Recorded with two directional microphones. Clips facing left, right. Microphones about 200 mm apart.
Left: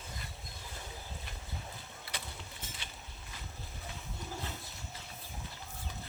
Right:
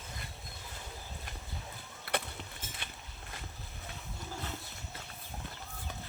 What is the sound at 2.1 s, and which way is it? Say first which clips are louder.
Rowboat: right 11 dB; 60° right (ahead or behind).